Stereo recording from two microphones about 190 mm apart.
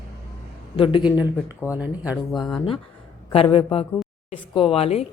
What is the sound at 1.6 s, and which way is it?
Speech, 10° right (ahead or behind).